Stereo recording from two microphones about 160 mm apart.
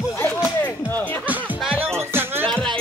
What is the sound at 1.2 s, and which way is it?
Music, 10° right (ahead or behind).